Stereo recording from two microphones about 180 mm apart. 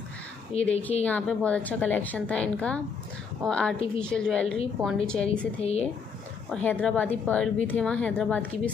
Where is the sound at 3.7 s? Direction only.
30° left (ahead or behind).